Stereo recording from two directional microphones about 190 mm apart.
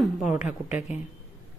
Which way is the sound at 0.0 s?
5° right (ahead or behind).